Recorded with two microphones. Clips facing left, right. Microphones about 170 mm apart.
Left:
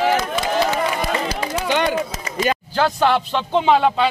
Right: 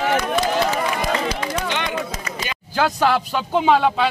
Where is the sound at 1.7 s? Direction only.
35° left (ahead or behind).